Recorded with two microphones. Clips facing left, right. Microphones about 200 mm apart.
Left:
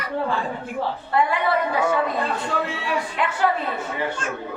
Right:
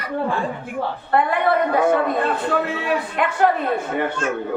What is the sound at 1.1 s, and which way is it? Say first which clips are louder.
A woman's voice: right 3 dB; 55° right (ahead or behind).